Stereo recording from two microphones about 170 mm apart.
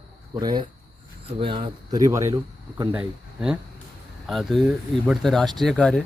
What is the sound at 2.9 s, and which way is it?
Speech, 5° right (ahead or behind).